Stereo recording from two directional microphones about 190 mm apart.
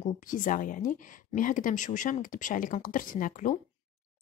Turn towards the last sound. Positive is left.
turn(degrees=45)  # may be behind; listen again after turning